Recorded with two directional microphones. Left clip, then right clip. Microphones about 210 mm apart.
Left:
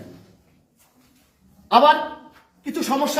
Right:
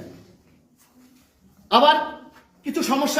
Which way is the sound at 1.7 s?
15° left (ahead or behind).